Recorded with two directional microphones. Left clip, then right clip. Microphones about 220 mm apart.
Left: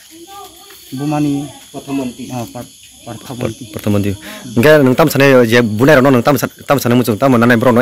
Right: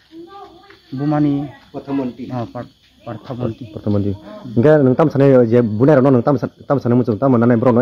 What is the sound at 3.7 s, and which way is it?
A man's voice, 20° left (ahead or behind).